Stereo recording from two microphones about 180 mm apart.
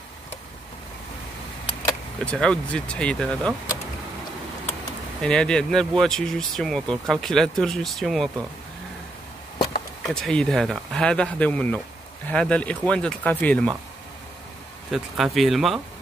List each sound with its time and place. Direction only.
2.2 s speech: 5° left (ahead or behind)
5.2 s speech: 5° left (ahead or behind)
10.0 s speech: 5° left (ahead or behind)
14.9 s speech: centre (ahead or behind)